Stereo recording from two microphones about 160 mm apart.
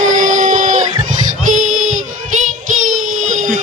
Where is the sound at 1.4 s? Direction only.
50° right (ahead or behind).